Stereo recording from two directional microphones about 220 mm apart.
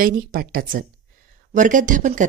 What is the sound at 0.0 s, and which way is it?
A woman's voice, 40° right (ahead or behind).